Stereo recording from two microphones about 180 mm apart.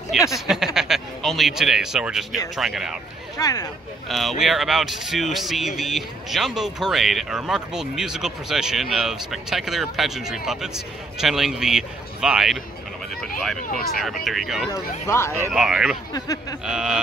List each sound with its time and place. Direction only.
0.1 s speech: centre (ahead or behind)
3.3 s speech: 20° left (ahead or behind)
4.1 s speech: centre (ahead or behind)
13.9 s speech: centre (ahead or behind)
14.7 s speech: 15° left (ahead or behind)
15.5 s speech: centre (ahead or behind)
16.1 s speech: 20° left (ahead or behind)
16.6 s speech: 5° right (ahead or behind)